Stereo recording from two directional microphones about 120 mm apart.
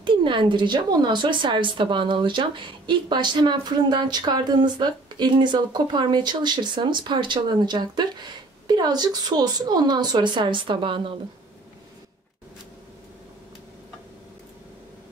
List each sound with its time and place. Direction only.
0.0 s speech: 45° right (ahead or behind)